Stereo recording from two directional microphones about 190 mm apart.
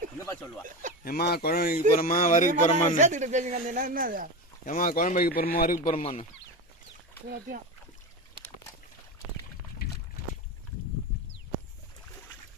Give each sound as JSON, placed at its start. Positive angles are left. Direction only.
{"t": 1.0, "sound": "speech", "side_deg": 55}
{"t": 3.0, "sound": "speech", "side_deg": -40}
{"t": 4.6, "sound": "speech", "side_deg": 45}
{"t": 5.9, "sound": "speech", "side_deg": 30}
{"t": 7.3, "sound": "speech", "side_deg": -50}
{"t": 9.8, "sound": "boat", "side_deg": 55}